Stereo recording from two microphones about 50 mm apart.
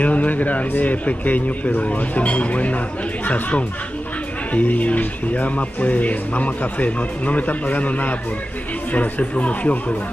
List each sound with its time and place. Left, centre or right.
0.0 s speech: left